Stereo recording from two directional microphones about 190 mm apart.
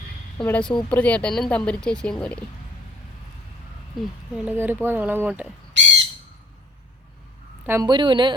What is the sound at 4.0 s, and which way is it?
Speech, centre (ahead or behind).